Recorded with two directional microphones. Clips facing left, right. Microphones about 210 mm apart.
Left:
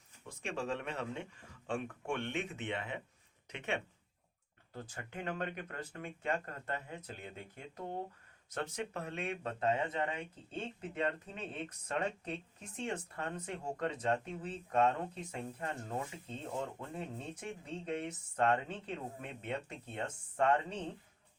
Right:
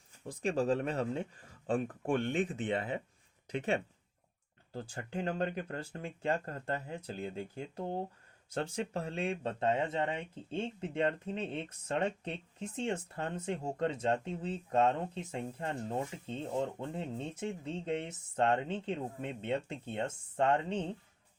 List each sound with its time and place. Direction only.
0.3 s speech: 35° right (ahead or behind)